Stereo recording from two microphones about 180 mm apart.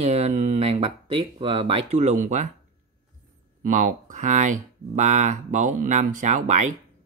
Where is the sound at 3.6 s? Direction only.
45° right (ahead or behind).